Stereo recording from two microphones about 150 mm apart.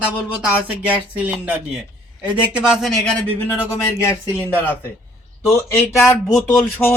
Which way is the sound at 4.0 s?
15° left (ahead or behind).